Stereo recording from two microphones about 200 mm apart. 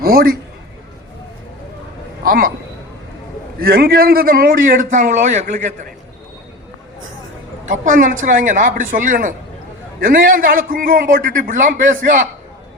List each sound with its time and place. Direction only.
0.0 s a man's voice: 50° right (ahead or behind)
2.2 s a man's voice: 45° right (ahead or behind)
3.6 s a man's voice: 50° right (ahead or behind)
7.6 s a man's voice: 40° right (ahead or behind)